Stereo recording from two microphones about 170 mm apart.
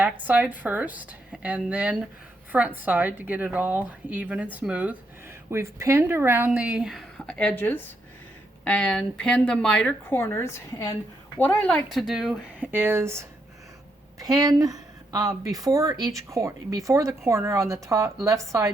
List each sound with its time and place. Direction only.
0.0 s a woman's voice: 10° right (ahead or behind)
12.7 s a woman's voice: 15° right (ahead or behind)